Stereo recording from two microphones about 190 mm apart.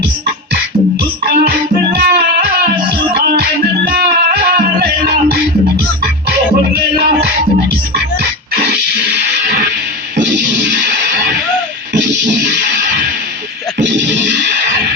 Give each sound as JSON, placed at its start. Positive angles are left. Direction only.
{"t": 1.2, "sound": "music", "side_deg": -55}
{"t": 3.8, "sound": "music", "side_deg": -55}
{"t": 10.2, "sound": "music", "side_deg": -70}
{"t": 13.7, "sound": "music", "side_deg": -70}